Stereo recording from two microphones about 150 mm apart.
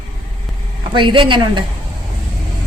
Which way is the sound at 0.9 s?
30° right (ahead or behind).